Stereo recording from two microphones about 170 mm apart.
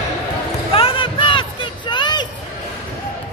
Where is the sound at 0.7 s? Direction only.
30° left (ahead or behind).